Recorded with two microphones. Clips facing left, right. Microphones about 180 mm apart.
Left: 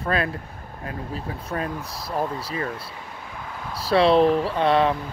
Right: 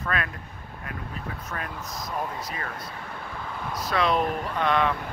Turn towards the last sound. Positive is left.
turn(degrees=30)  # may be behind; listen again after turning